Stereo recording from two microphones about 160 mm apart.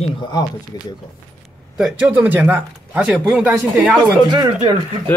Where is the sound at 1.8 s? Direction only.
10° right (ahead or behind).